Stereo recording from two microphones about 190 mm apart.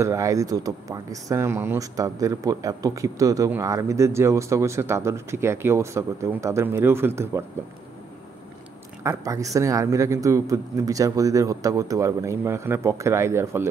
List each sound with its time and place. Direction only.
0.0 s speech: 15° right (ahead or behind)
9.0 s speech: 15° right (ahead or behind)